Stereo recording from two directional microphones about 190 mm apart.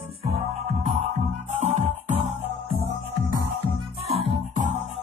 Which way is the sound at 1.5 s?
35° right (ahead or behind).